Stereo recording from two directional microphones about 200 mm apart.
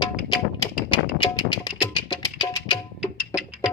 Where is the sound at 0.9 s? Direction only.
25° left (ahead or behind).